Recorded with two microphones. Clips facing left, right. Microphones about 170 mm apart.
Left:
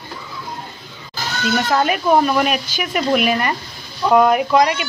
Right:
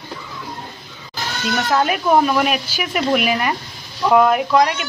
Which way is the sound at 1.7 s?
Centre (ahead or behind).